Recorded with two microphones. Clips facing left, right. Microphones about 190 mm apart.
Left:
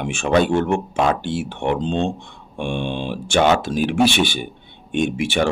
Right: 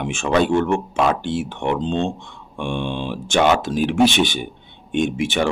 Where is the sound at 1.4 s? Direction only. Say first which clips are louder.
Left 1 dB; 40° left (ahead or behind).